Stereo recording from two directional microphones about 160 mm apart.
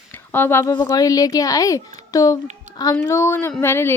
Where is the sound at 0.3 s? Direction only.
15° left (ahead or behind).